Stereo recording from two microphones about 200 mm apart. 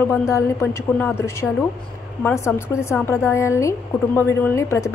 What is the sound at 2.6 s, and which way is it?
A woman's voice, 10° left (ahead or behind).